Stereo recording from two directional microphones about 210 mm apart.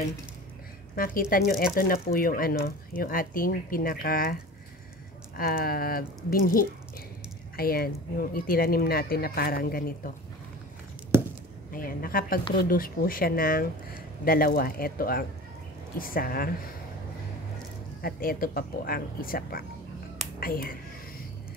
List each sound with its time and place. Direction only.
0.9 s speech: 45° left (ahead or behind)
11.1 s chop: 10° right (ahead or behind)
11.7 s speech: 45° left (ahead or behind)
18.0 s speech: 45° left (ahead or behind)